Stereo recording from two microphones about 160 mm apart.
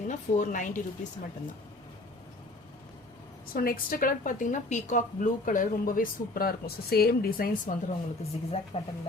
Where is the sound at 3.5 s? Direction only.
65° left (ahead or behind).